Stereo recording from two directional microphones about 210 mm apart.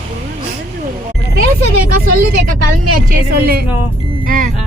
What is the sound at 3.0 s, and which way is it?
A woman's voice, 50° right (ahead or behind).